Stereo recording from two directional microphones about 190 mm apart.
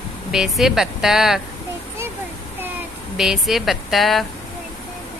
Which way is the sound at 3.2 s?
Centre (ahead or behind).